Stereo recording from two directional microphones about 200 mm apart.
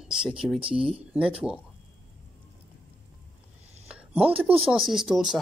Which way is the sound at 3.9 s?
5° right (ahead or behind).